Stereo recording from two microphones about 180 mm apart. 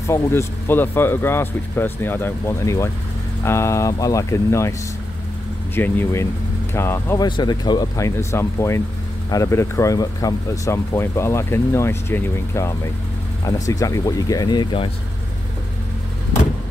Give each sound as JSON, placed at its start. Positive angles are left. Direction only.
{"t": 0.0, "sound": "speech", "side_deg": 15}
{"t": 5.8, "sound": "speech", "side_deg": 10}
{"t": 7.2, "sound": "speech", "side_deg": 25}